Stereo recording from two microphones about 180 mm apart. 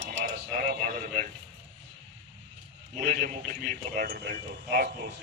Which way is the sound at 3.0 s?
45° right (ahead or behind).